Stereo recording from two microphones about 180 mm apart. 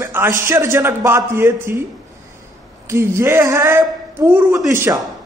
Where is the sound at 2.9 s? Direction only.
15° right (ahead or behind).